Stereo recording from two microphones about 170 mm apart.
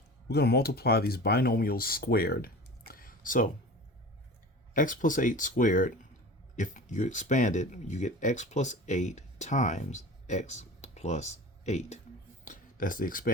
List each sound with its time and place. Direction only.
0.3 s speech: 70° left (ahead or behind); by 3.5 s 55° left (ahead or behind)
4.7 s speech: 50° left (ahead or behind)
12.5 s speech: 55° left (ahead or behind)